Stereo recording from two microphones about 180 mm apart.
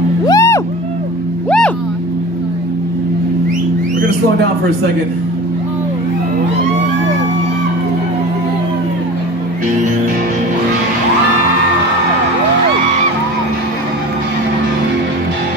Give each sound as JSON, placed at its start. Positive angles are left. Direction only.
{"t": 0.3, "sound": "music", "side_deg": 20}